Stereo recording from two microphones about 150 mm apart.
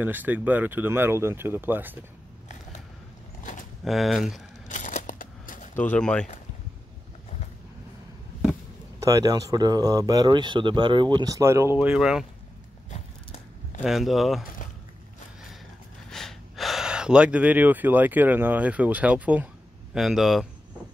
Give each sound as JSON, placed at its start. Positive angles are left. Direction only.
{"t": 0.0, "sound": "speech", "side_deg": -10}
{"t": 3.8, "sound": "speech", "side_deg": 0}
{"t": 4.6, "sound": "a sound", "side_deg": 55}
{"t": 5.9, "sound": "speech", "side_deg": 5}
{"t": 9.0, "sound": "speech", "side_deg": -25}
{"t": 13.8, "sound": "speech", "side_deg": 0}
{"t": 16.1, "sound": "speech", "side_deg": 5}